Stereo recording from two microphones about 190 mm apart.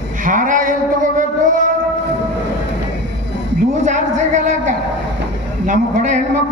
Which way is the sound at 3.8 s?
40° right (ahead or behind).